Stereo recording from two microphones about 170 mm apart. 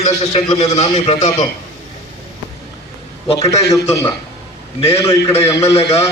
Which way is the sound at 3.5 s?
20° left (ahead or behind).